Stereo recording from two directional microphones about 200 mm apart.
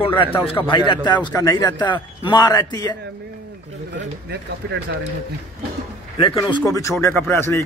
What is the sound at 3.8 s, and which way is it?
Speech, 55° right (ahead or behind).